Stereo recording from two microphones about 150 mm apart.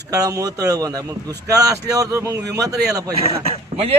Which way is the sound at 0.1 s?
25° right (ahead or behind).